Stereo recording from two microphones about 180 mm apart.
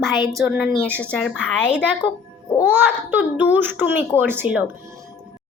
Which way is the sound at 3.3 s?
10° right (ahead or behind).